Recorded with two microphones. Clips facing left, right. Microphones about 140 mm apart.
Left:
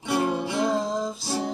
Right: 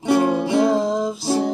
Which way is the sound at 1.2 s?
25° right (ahead or behind).